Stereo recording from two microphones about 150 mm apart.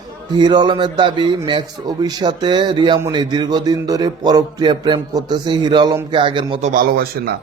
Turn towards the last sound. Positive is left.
turn(degrees=-70)  # may be behind; listen again after turning